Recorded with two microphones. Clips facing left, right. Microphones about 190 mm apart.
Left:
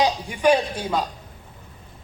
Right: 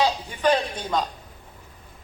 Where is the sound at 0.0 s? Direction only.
15° left (ahead or behind).